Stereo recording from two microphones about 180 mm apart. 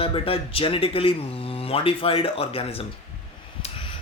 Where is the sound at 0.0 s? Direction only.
30° left (ahead or behind).